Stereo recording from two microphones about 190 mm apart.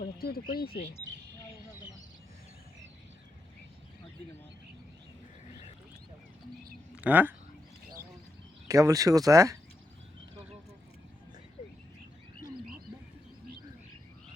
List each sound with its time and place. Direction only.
0.0 s speech: 50° left (ahead or behind)
6.9 s speech: 10° right (ahead or behind)
8.6 s speech: 15° right (ahead or behind)